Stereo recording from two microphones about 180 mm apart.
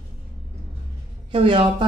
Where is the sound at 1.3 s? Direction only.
30° right (ahead or behind).